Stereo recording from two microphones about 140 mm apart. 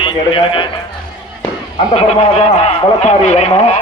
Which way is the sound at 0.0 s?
35° left (ahead or behind).